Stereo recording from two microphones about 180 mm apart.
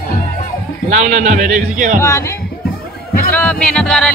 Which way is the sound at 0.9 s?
45° right (ahead or behind).